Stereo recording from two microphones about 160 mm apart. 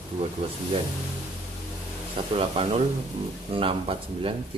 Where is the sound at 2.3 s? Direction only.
35° right (ahead or behind).